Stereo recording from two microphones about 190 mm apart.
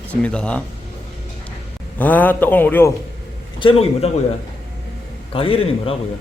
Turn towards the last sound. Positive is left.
turn(degrees=30)  # may be behind; listen again after turning